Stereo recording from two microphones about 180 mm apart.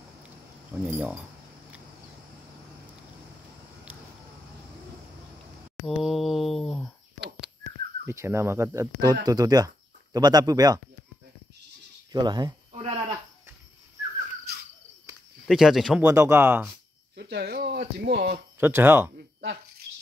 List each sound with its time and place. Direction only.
0.8 s speech: 10° right (ahead or behind)
5.9 s a sound: centre (ahead or behind)
8.1 s speech: 15° right (ahead or behind)
12.1 s a sound: 25° right (ahead or behind)
15.4 s speech: centre (ahead or behind)
16.1 s speech: 15° right (ahead or behind)
17.1 s speech: 65° right (ahead or behind)
18.6 s speech: 10° right (ahead or behind)
19.1 s a sound: 70° right (ahead or behind)